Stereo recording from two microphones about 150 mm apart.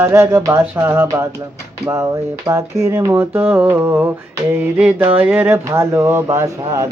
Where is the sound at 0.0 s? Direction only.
15° right (ahead or behind).